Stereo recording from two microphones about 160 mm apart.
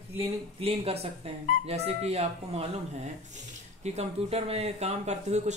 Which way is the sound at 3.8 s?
40° right (ahead or behind).